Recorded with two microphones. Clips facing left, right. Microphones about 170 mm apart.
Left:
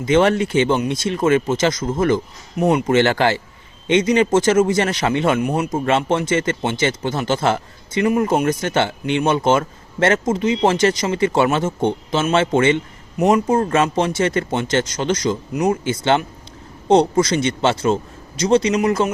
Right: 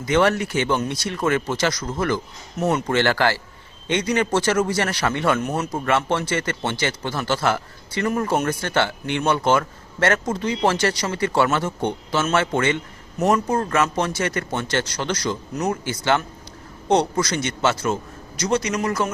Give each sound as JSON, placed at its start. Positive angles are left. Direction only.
{"t": 0.0, "sound": "speech", "side_deg": 20}